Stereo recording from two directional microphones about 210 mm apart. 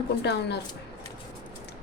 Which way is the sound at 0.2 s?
55° left (ahead or behind).